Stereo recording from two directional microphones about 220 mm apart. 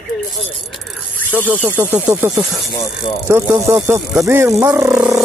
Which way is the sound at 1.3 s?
5° right (ahead or behind).